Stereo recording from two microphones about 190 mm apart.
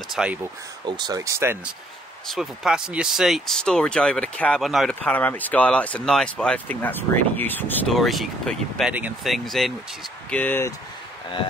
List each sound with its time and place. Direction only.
0.1 s speech: 5° right (ahead or behind)
0.8 s speech: 20° right (ahead or behind)
2.2 s speech: centre (ahead or behind)